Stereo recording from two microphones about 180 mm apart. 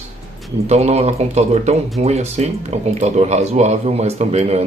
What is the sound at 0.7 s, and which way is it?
Speech, 35° right (ahead or behind).